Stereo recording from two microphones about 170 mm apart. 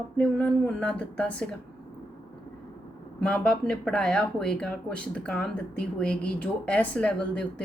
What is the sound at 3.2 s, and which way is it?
A woman's voice, 5° left (ahead or behind).